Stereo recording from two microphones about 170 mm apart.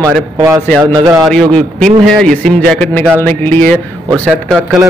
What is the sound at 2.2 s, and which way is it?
Speech, 5° left (ahead or behind).